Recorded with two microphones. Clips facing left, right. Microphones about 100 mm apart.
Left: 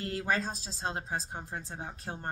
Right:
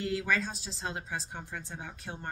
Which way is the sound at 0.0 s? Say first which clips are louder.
Right 1 dB; 40° left (ahead or behind).